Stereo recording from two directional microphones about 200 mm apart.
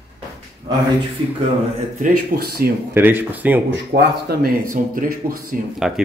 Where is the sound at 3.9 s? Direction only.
50° right (ahead or behind).